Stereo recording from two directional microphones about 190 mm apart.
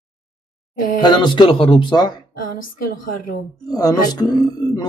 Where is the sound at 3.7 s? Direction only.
20° left (ahead or behind).